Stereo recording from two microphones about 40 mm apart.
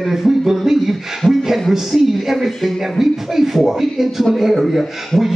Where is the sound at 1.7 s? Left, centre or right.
Centre.